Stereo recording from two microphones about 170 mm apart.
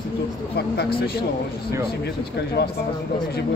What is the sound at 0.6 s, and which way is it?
Speech, 70° left (ahead or behind).